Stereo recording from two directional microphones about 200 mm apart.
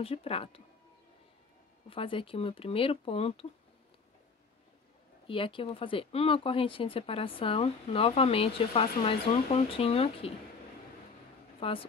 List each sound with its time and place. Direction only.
0.0 s speech: 30° left (ahead or behind)
1.9 s speech: 25° left (ahead or behind)
5.2 s speech: 25° left (ahead or behind)
11.6 s speech: 30° left (ahead or behind)